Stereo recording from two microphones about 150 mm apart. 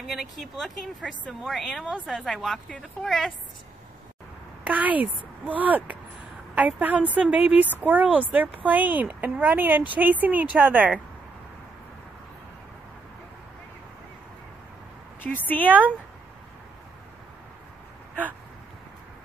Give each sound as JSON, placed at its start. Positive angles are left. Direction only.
{"t": 0.0, "sound": "a woman's voice", "side_deg": 0}
{"t": 4.6, "sound": "speech", "side_deg": -10}
{"t": 15.2, "sound": "speech", "side_deg": 10}